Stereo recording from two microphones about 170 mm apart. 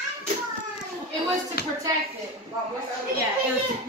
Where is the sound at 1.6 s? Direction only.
70° left (ahead or behind).